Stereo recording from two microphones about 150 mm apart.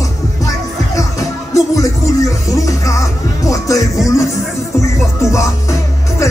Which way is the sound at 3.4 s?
20° left (ahead or behind).